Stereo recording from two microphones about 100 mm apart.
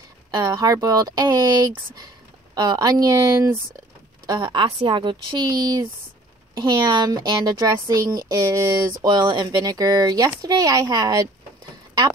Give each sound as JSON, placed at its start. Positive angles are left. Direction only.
{"t": 0.3, "sound": "a woman's voice", "side_deg": -40}
{"t": 4.4, "sound": "a woman's voice", "side_deg": -55}